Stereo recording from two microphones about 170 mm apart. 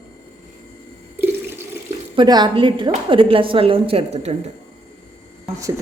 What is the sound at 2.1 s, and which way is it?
A woman's voice, 25° right (ahead or behind).